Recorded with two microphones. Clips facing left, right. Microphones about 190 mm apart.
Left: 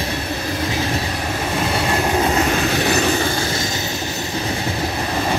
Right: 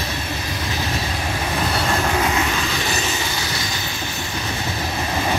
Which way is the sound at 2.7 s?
65° left (ahead or behind).